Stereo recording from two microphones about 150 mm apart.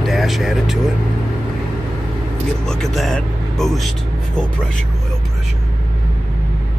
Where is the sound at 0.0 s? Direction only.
Centre (ahead or behind).